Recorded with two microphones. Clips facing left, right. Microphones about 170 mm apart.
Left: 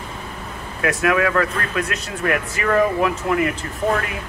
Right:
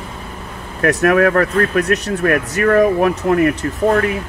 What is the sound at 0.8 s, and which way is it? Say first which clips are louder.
Speech: right 6 dB; 40° right (ahead or behind).